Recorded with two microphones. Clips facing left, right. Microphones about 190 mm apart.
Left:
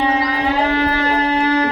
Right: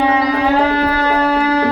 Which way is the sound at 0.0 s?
55° right (ahead or behind).